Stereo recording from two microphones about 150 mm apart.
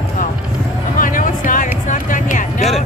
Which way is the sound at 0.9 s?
65° left (ahead or behind).